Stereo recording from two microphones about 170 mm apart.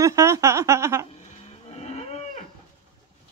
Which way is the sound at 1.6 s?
40° left (ahead or behind).